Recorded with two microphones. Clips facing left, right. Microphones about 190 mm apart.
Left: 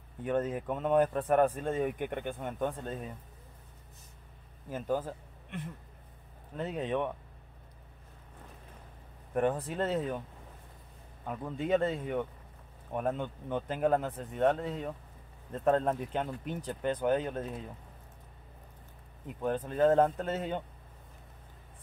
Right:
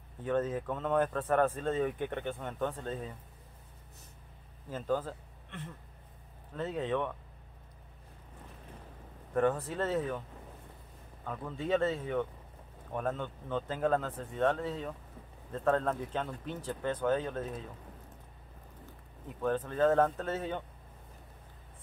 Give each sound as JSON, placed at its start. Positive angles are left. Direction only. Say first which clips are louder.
{"t": 0.2, "sound": "speech", "louder": "even", "side_deg": 15}
{"t": 4.6, "sound": "speech", "louder": "even", "side_deg": 15}
{"t": 9.3, "sound": "speech", "louder": "even", "side_deg": 15}
{"t": 11.2, "sound": "speech", "louder": "left 2 dB", "side_deg": 15}
{"t": 19.4, "sound": "speech", "louder": "left 1 dB", "side_deg": 15}